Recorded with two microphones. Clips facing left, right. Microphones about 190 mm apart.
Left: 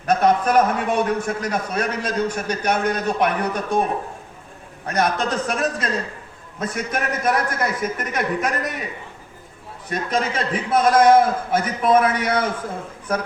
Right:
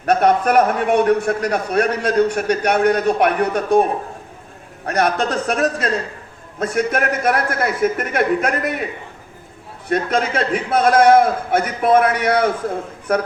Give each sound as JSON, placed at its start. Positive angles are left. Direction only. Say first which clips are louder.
{"t": 0.0, "sound": "a man's voice", "louder": "right 2 dB", "side_deg": -65}
{"t": 4.9, "sound": "a man's voice", "louder": "right 3 dB", "side_deg": -60}
{"t": 9.9, "sound": "a man's voice", "louder": "right 4 dB", "side_deg": -60}